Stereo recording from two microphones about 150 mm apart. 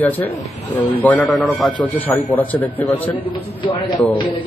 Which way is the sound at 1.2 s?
Centre (ahead or behind).